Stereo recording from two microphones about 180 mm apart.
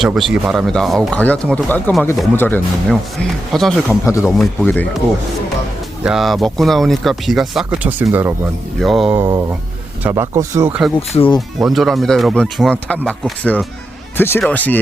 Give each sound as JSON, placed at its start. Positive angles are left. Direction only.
{"t": 0.0, "sound": "speech", "side_deg": 0}
{"t": 6.0, "sound": "speech", "side_deg": -5}
{"t": 8.8, "sound": "speech", "side_deg": 0}
{"t": 9.2, "sound": "speech", "side_deg": -15}
{"t": 11.1, "sound": "speech", "side_deg": 30}
{"t": 11.3, "sound": "speech", "side_deg": 0}